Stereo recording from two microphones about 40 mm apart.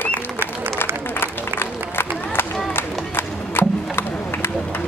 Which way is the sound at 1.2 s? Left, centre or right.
Left.